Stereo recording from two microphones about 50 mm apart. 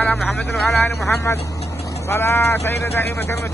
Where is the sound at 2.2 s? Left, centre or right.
Left.